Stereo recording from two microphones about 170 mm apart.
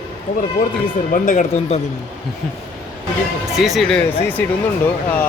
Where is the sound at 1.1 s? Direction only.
50° left (ahead or behind).